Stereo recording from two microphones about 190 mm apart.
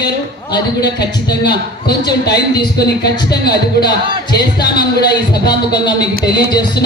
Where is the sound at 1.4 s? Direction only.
60° left (ahead or behind).